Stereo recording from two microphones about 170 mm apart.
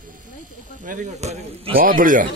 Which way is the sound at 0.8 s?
50° right (ahead or behind).